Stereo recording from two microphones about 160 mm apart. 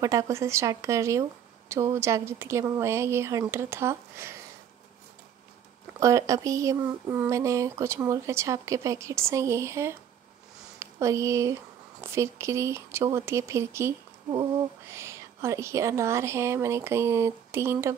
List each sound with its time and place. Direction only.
0.0 s speech: 20° right (ahead or behind)
5.9 s speech: 20° right (ahead or behind)